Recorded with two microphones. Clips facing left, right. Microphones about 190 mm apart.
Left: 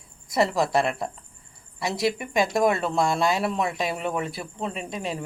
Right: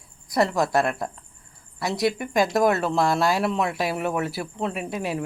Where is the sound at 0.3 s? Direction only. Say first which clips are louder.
Right 1 dB; centre (ahead or behind).